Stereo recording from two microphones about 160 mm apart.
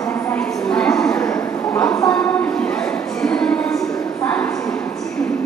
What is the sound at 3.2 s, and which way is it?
Music, 5° left (ahead or behind).